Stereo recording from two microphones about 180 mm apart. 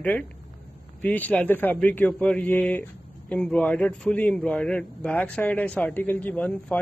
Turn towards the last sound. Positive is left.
turn(degrees=5)  # may be behind; listen again after turning